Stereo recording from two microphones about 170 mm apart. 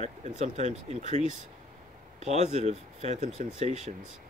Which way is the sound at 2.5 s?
40° right (ahead or behind).